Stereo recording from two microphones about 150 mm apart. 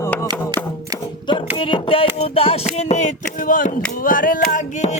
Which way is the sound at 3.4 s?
65° left (ahead or behind).